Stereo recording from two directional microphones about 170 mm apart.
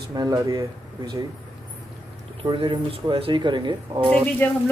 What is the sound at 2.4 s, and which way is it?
Speech, 30° right (ahead or behind).